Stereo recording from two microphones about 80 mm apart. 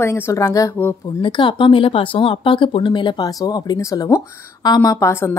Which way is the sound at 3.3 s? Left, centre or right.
Left.